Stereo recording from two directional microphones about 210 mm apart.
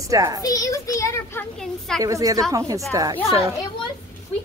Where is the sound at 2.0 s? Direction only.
15° right (ahead or behind).